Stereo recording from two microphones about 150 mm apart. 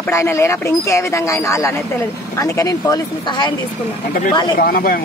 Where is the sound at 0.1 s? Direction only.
20° left (ahead or behind).